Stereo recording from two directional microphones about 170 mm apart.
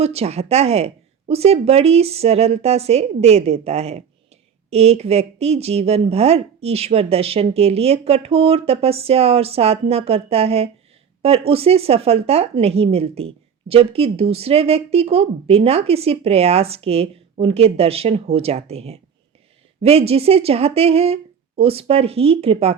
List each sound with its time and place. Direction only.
0.0 s speech: 35° right (ahead or behind)